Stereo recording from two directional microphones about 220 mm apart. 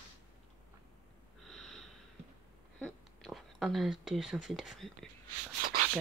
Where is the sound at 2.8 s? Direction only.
Centre (ahead or behind).